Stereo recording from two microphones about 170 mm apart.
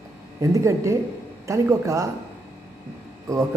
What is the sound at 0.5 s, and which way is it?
A woman's voice, 15° right (ahead or behind).